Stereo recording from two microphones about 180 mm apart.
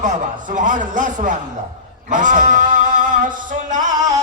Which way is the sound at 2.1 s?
45° right (ahead or behind).